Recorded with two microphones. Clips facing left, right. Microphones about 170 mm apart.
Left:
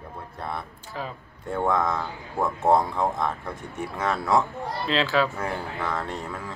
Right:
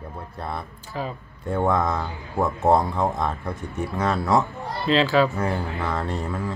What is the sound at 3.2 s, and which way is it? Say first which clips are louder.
Speech: right 2 dB; centre (ahead or behind).